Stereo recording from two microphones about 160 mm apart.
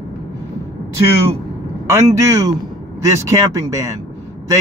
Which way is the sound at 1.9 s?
20° right (ahead or behind).